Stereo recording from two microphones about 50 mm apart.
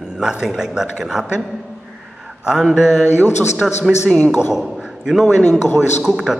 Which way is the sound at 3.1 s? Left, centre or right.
Left.